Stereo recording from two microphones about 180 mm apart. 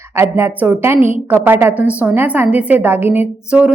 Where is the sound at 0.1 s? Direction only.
15° right (ahead or behind).